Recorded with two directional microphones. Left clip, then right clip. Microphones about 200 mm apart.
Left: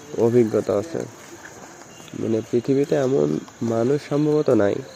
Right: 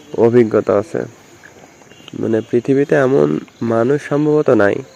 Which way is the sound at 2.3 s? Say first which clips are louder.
Right 6 dB; 10° right (ahead or behind).